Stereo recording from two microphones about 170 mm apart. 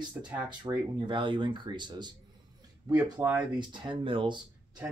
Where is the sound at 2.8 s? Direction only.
10° right (ahead or behind).